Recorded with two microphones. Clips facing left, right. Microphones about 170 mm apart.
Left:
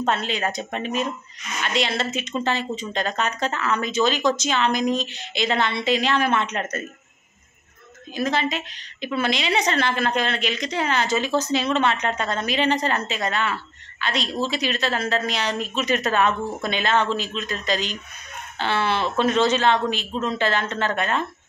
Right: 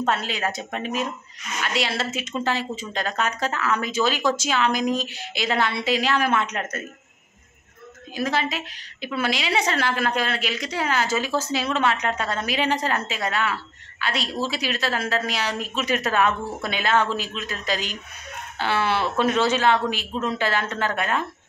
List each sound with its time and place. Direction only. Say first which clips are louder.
0.0 s speech: left 1 dB; 5° right (ahead or behind)
8.1 s a woman's voice: left 1 dB; 5° right (ahead or behind)